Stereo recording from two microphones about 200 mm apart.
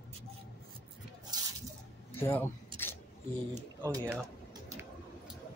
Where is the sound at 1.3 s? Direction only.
20° right (ahead or behind).